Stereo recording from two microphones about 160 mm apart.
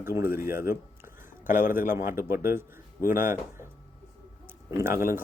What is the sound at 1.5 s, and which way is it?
Speech, 55° left (ahead or behind).